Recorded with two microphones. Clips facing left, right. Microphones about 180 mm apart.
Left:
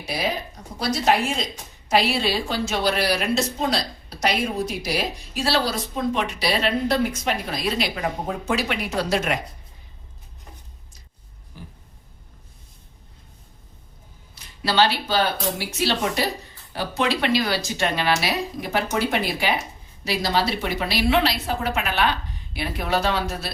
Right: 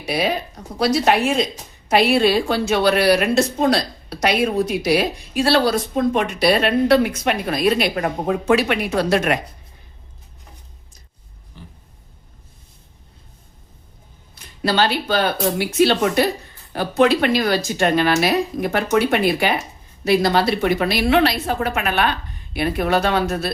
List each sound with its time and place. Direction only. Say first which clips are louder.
0.0 s speech: right 6 dB; 65° right (ahead or behind)
1.9 s a woman's voice: right 6 dB; 55° right (ahead or behind)
11.6 s a sound: even; 10° left (ahead or behind)
14.6 s a woman's voice: right 2 dB; 50° right (ahead or behind)